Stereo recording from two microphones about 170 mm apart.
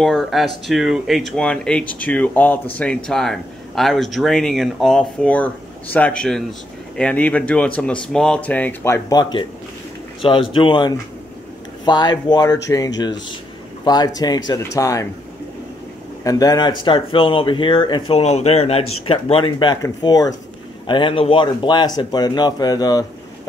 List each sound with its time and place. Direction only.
0.0 s speech: centre (ahead or behind); by 15.0 s 20° left (ahead or behind)
16.3 s speech: 20° left (ahead or behind)